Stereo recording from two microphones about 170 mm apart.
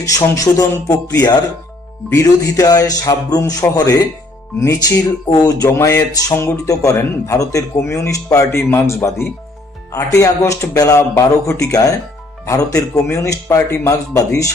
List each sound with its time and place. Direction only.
0.0 s speech: 20° left (ahead or behind)